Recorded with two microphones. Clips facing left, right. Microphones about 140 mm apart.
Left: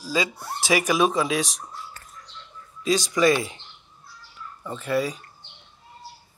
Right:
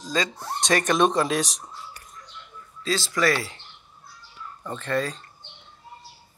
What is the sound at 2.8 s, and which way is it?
Speech, 15° left (ahead or behind).